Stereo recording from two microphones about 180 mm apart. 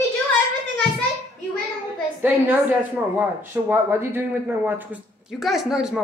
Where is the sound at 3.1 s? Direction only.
10° right (ahead or behind).